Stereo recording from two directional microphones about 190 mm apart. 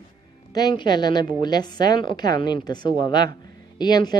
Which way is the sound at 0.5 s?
20° left (ahead or behind).